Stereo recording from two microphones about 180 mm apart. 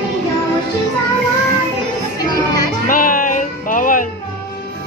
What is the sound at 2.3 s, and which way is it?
Music, 20° left (ahead or behind).